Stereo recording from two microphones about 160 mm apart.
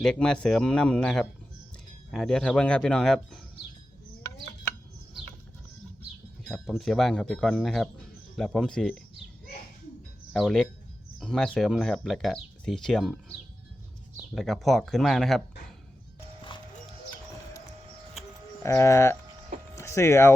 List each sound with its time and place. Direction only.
0.0 s speech: 5° left (ahead or behind)
6.5 s speech: centre (ahead or behind)
10.3 s speech: centre (ahead or behind)
14.3 s speech: centre (ahead or behind)
16.5 s clip-clop: 30° left (ahead or behind)
18.6 s speech: 15° left (ahead or behind)
19.7 s a sound: 15° left (ahead or behind)